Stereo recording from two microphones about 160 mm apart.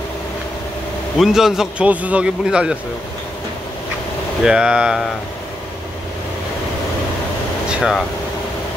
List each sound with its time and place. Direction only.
1.1 s a man's voice: centre (ahead or behind)
4.5 s a man's voice: 5° right (ahead or behind)
7.7 s air conditioning: 5° right (ahead or behind)